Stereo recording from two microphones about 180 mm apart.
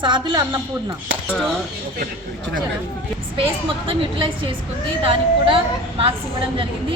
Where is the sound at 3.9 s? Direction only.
30° right (ahead or behind).